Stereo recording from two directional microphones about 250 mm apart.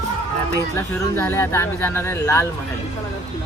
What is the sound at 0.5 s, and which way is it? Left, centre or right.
Speech, centre.